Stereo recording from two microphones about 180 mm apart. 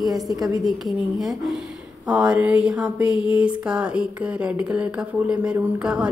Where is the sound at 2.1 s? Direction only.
5° right (ahead or behind).